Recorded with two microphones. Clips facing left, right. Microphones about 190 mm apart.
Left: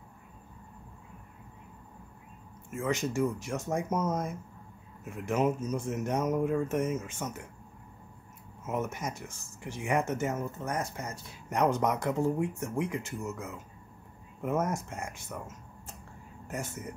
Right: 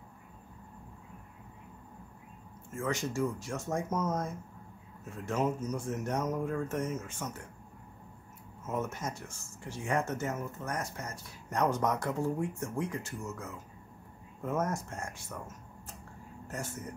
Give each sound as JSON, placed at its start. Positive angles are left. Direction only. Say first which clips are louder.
{"t": 2.7, "sound": "speech", "louder": "left 3 dB", "side_deg": 20}
{"t": 8.6, "sound": "speech", "louder": "left 2 dB", "side_deg": 15}
{"t": 14.4, "sound": "speech", "louder": "left 2 dB", "side_deg": 20}
{"t": 16.4, "sound": "speech", "louder": "left 2 dB", "side_deg": 20}